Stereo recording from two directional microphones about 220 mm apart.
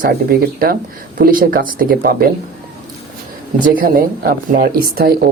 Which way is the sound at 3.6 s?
40° right (ahead or behind).